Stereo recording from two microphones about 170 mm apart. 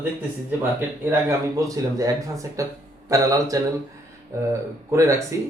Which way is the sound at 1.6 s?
20° right (ahead or behind).